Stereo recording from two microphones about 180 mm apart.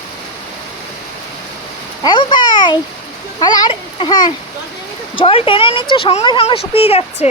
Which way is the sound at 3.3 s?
20° left (ahead or behind).